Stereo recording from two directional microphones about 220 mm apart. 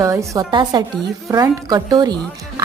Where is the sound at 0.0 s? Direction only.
15° right (ahead or behind).